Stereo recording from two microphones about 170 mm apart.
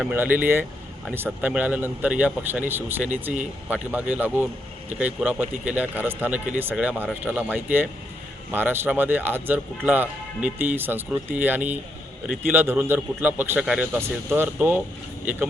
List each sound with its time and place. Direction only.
0.0 s speech: 10° right (ahead or behind)